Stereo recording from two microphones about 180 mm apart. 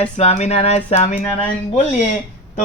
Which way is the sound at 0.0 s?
35° left (ahead or behind).